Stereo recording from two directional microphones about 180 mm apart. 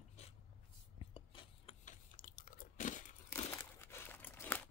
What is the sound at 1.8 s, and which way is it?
Biting, 45° left (ahead or behind).